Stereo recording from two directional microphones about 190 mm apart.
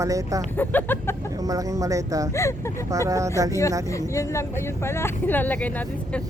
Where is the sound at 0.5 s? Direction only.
10° left (ahead or behind).